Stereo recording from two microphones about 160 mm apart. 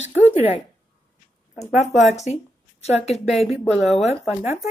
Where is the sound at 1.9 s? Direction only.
45° left (ahead or behind).